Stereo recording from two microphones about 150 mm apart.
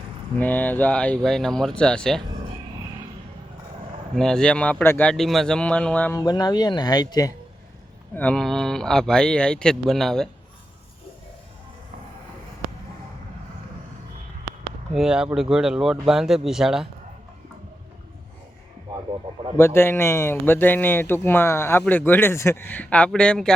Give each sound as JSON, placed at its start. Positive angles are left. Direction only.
{"t": 0.3, "sound": "speech", "side_deg": 10}
{"t": 4.1, "sound": "speech", "side_deg": 5}
{"t": 6.1, "sound": "speech", "side_deg": 25}
{"t": 8.1, "sound": "speech", "side_deg": 10}
{"t": 14.9, "sound": "speech", "side_deg": -5}
{"t": 19.5, "sound": "speech", "side_deg": 15}